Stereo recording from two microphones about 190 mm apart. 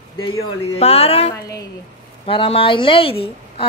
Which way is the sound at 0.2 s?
30° left (ahead or behind).